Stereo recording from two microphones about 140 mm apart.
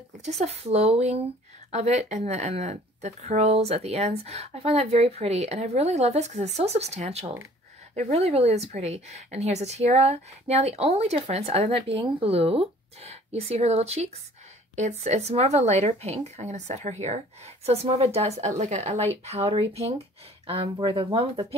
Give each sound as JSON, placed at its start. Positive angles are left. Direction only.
{"t": 0.2, "sound": "speech", "side_deg": -50}
{"t": 20.6, "sound": "speech", "side_deg": -35}